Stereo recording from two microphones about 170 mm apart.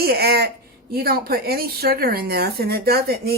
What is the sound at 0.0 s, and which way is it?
Speech, 65° right (ahead or behind).